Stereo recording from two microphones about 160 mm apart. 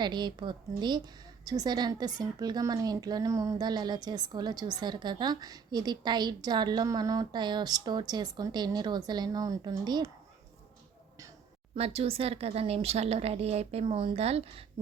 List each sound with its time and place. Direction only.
0.0 s a woman's voice: 30° right (ahead or behind)
11.7 s speech: 40° right (ahead or behind)